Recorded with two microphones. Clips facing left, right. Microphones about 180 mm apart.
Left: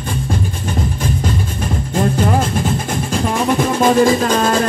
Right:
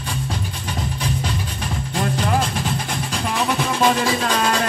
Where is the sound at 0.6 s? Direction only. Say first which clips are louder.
Left 6 dB; 45° left (ahead or behind).